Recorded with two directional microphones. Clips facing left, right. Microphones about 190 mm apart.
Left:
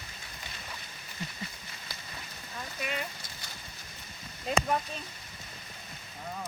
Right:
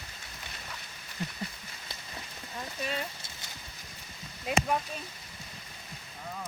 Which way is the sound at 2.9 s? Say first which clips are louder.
Right 1 dB; 30° right (ahead or behind).